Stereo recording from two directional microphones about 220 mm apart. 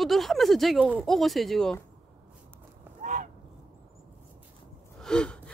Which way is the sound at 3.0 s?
35° right (ahead or behind).